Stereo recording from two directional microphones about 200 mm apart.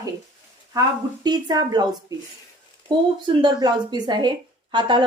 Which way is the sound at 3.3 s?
20° right (ahead or behind).